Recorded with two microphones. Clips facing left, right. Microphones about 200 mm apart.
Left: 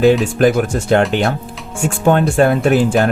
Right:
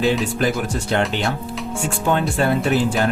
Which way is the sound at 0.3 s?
50° left (ahead or behind).